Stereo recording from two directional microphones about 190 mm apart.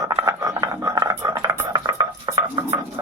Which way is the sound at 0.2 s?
15° right (ahead or behind).